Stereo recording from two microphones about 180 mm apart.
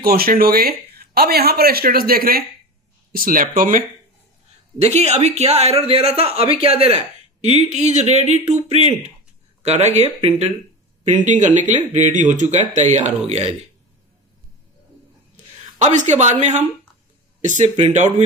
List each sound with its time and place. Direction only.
0.0 s speech: 55° right (ahead or behind)
4.8 s speech: 40° right (ahead or behind)
15.8 s speech: 40° right (ahead or behind)